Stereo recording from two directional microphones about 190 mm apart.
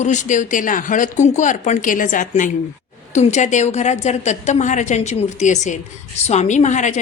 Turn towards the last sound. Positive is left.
turn(degrees=40)  # may be behind; listen again after turning